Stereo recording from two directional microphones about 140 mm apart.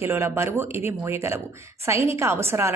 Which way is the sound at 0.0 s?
15° right (ahead or behind).